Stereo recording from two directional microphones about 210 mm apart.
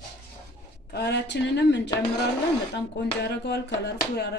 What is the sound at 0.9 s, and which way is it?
A woman's voice, 50° left (ahead or behind).